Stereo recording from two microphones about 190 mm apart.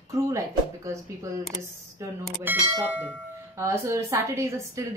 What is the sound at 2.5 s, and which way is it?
A woman's voice, 10° right (ahead or behind).